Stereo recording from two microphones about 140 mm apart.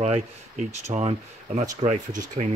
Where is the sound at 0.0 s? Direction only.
55° right (ahead or behind).